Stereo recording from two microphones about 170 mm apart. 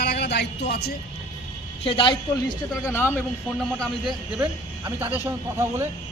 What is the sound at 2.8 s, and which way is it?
Speech, 15° left (ahead or behind).